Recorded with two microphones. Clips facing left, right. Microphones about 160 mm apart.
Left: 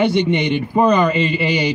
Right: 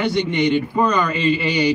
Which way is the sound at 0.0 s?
25° left (ahead or behind).